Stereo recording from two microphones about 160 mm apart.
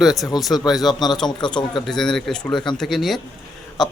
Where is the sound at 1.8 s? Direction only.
5° left (ahead or behind).